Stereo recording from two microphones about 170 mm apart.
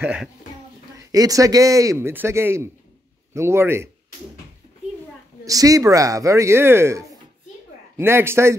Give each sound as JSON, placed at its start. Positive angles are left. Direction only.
{"t": 0.0, "sound": "a man's voice", "side_deg": -10}
{"t": 0.9, "sound": "a man's voice", "side_deg": -20}
{"t": 5.4, "sound": "a man's voice", "side_deg": -20}